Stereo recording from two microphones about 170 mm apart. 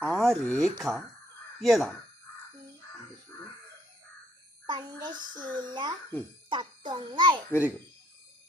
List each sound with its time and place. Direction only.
0.0 s speech: 5° left (ahead or behind)
4.6 s a child's voice: 25° right (ahead or behind)
6.5 s music: 25° right (ahead or behind)